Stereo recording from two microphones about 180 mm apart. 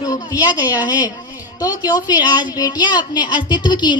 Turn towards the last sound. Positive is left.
turn(degrees=25)  # may be behind; listen again after turning